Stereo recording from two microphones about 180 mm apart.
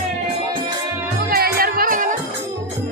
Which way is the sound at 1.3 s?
55° right (ahead or behind).